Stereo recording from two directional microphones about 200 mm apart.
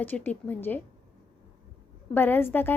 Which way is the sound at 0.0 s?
10° left (ahead or behind).